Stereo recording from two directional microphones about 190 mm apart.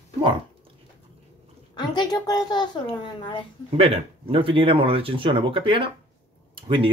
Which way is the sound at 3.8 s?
30° right (ahead or behind).